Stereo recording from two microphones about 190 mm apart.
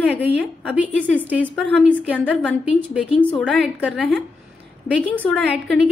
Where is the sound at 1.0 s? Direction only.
5° left (ahead or behind).